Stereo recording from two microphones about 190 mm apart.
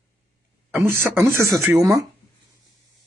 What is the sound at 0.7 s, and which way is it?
Speech, 15° right (ahead or behind).